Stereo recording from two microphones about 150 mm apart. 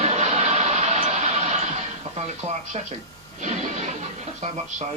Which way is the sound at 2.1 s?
50° right (ahead or behind).